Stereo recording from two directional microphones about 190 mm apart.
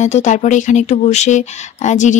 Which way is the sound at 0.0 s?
40° left (ahead or behind).